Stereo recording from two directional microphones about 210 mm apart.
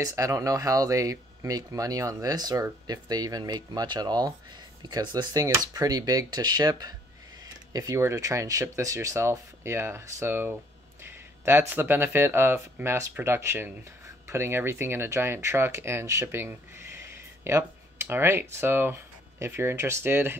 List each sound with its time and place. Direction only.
0.0 s speech: 15° right (ahead or behind)